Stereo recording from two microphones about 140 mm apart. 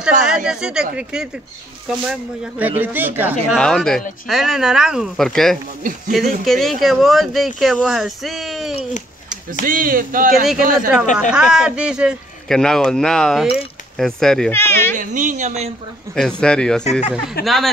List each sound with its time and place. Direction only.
0.3 s a sound: 5° right (ahead or behind)
0.9 s speech: 5° right (ahead or behind)
3.5 s speech: 5° left (ahead or behind)
9.5 s speech: 85° right
11.1 s speech: 5° right (ahead or behind)
14.5 s speech: 15° left (ahead or behind)
15.0 s speech: 65° right (ahead or behind)
16.2 s speech: 5° left (ahead or behind)